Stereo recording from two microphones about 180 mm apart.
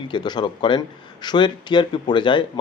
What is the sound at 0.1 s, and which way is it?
Speech, 25° left (ahead or behind).